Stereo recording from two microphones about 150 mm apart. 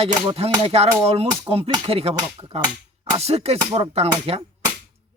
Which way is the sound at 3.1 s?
45° right (ahead or behind).